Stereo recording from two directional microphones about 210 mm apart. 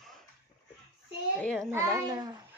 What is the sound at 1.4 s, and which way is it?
Speech, 5° left (ahead or behind).